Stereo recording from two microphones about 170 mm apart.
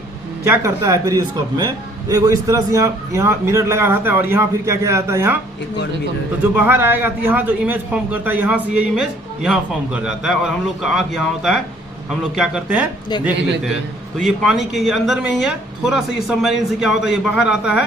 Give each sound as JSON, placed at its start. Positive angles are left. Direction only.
{"t": 0.4, "sound": "a man's voice", "side_deg": -15}
{"t": 6.4, "sound": "a man's voice", "side_deg": -10}
{"t": 14.2, "sound": "speech", "side_deg": 0}